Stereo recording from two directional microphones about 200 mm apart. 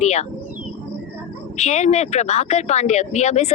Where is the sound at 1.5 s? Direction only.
35° left (ahead or behind).